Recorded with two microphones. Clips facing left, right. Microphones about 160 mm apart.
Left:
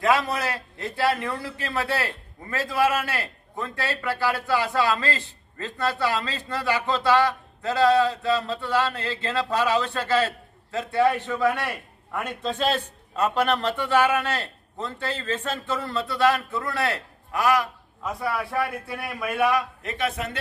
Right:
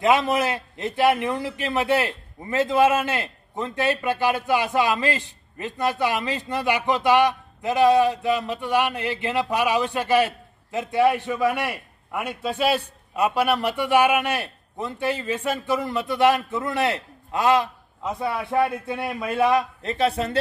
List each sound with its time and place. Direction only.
0.0 s a man's voice: 20° right (ahead or behind)